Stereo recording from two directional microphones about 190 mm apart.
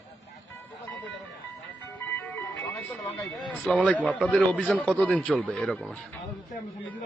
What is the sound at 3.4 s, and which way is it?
Speech, 5° left (ahead or behind).